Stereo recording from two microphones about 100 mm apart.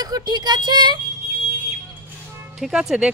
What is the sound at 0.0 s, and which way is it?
Speech, 40° right (ahead or behind).